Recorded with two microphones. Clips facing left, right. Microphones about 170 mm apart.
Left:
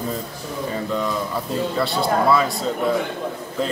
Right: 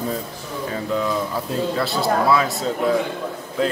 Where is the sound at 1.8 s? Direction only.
Centre (ahead or behind).